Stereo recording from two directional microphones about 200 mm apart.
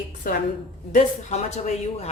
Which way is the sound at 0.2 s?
45° left (ahead or behind).